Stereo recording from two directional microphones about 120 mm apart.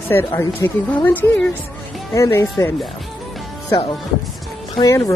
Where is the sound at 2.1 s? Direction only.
25° left (ahead or behind).